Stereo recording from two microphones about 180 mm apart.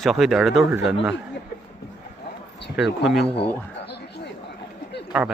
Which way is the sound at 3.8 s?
65° left (ahead or behind).